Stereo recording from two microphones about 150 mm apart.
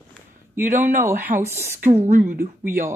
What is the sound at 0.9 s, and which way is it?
Speech, 15° right (ahead or behind).